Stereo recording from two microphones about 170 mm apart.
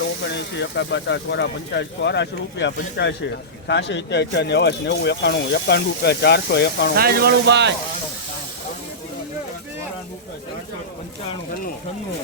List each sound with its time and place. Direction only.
0.3 s speech: 90° left
6.9 s speech: 65° right (ahead or behind); by 7.7 s 85° right